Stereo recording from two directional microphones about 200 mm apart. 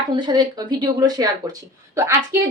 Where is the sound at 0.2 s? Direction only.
20° right (ahead or behind).